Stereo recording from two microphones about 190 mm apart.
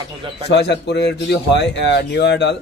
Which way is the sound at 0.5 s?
65° left (ahead or behind).